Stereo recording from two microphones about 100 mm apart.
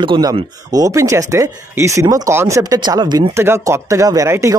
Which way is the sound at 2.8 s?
45° right (ahead or behind).